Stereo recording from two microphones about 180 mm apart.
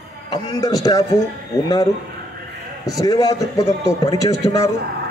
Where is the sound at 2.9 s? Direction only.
20° left (ahead or behind).